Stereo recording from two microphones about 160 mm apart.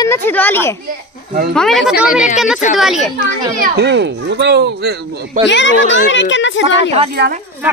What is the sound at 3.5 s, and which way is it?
A child's voice, 75° right (ahead or behind).